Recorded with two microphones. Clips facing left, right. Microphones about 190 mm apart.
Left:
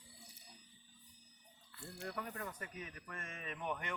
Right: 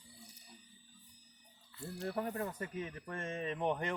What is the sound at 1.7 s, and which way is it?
Speech, 25° right (ahead or behind).